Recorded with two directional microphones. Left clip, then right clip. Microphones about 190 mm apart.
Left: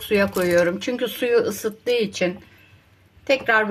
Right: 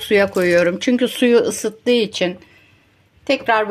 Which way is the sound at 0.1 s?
35° right (ahead or behind).